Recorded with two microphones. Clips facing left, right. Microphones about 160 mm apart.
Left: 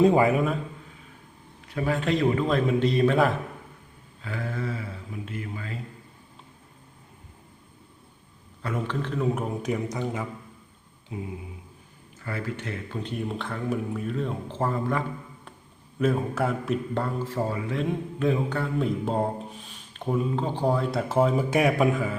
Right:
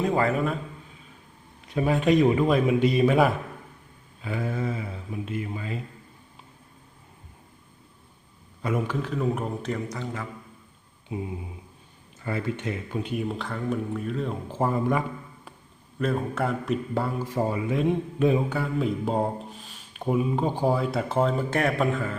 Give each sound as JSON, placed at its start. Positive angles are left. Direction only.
{"t": 0.2, "sound": "a man's voice", "side_deg": 10}
{"t": 1.6, "sound": "a man's voice", "side_deg": -20}
{"t": 8.6, "sound": "speech", "side_deg": -10}
{"t": 9.9, "sound": "a man's voice", "side_deg": 15}
{"t": 12.2, "sound": "speech", "side_deg": -20}
{"t": 13.0, "sound": "speech", "side_deg": -5}
{"t": 14.5, "sound": "a man's voice", "side_deg": -15}
{"t": 16.0, "sound": "a man's voice", "side_deg": 5}
{"t": 18.5, "sound": "speech", "side_deg": -5}
{"t": 20.1, "sound": "speech", "side_deg": -10}